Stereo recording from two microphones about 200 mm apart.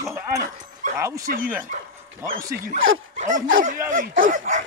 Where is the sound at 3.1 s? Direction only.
40° right (ahead or behind).